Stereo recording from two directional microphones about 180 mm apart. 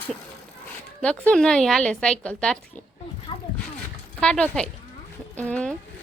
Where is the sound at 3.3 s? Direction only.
30° left (ahead or behind).